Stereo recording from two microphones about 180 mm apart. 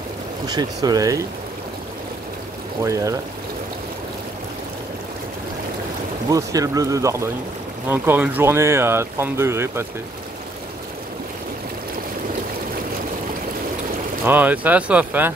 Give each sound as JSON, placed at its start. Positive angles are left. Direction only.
{"t": 0.5, "sound": "speech", "side_deg": -20}
{"t": 2.8, "sound": "speech", "side_deg": -15}
{"t": 6.3, "sound": "speech", "side_deg": -20}
{"t": 14.2, "sound": "speech", "side_deg": -10}